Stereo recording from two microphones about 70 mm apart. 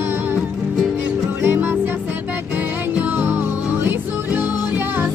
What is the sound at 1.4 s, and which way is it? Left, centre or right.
Music, right.